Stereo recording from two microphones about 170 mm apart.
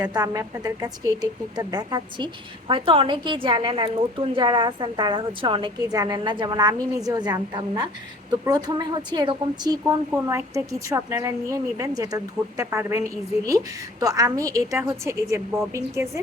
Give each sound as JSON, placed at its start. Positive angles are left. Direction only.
{"t": 0.0, "sound": "a woman's voice", "side_deg": -25}